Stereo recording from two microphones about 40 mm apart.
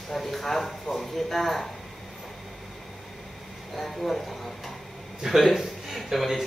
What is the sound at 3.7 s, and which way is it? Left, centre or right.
A man's voice, centre.